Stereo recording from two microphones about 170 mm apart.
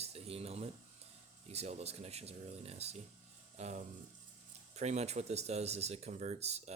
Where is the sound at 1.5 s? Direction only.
40° right (ahead or behind).